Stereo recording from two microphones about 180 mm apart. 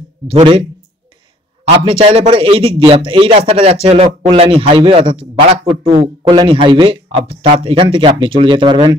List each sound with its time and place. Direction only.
0.3 s a man's voice: 30° right (ahead or behind)
1.9 s a man's voice: 30° right (ahead or behind)